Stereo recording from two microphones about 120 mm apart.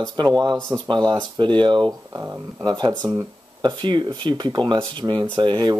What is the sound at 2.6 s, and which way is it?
Speech, 40° right (ahead or behind).